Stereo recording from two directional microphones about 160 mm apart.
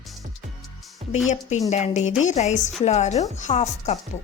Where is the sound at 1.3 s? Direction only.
45° left (ahead or behind).